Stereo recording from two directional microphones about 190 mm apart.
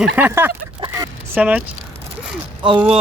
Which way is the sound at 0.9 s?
10° right (ahead or behind).